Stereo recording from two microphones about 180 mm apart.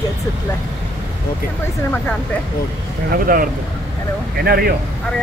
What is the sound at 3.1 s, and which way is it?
A man's voice, 55° right (ahead or behind).